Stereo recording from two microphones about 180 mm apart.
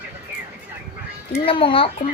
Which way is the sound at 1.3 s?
30° left (ahead or behind).